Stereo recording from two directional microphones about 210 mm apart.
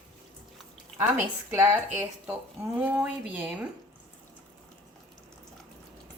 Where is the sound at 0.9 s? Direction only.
10° right (ahead or behind).